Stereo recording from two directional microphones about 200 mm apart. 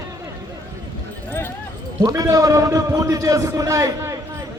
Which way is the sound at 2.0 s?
15° right (ahead or behind).